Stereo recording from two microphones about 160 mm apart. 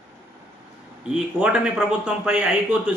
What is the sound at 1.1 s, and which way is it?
A man's voice, 5° right (ahead or behind).